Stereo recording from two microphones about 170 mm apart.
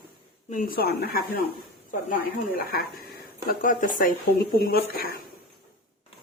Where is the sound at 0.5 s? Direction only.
55° left (ahead or behind).